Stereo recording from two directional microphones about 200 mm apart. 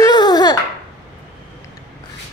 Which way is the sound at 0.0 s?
20° left (ahead or behind).